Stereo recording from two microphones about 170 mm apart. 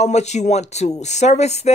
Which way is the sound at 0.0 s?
40° left (ahead or behind).